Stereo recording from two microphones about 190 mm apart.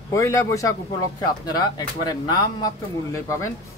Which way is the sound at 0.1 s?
15° left (ahead or behind).